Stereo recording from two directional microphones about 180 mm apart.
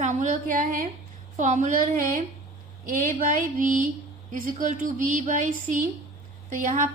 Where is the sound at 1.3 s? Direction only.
45° right (ahead or behind).